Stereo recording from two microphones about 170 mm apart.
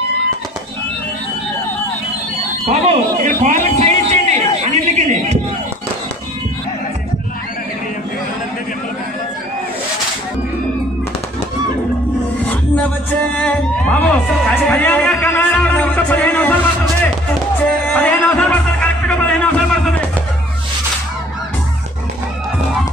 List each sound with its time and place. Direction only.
2.6 s speech: 40° right (ahead or behind)
3.3 s a sound: 50° right (ahead or behind)
13.4 s music: 5° left (ahead or behind)
17.9 s music: 10° left (ahead or behind)